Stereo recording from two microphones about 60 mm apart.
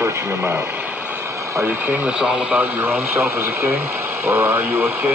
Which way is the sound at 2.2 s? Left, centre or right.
Centre.